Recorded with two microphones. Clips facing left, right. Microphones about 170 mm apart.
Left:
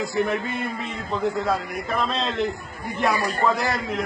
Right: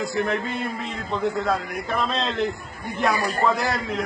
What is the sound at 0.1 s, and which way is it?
A man's voice, centre (ahead or behind).